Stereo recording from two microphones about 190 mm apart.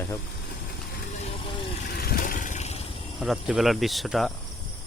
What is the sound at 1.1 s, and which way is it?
Vehicle, 35° left (ahead or behind).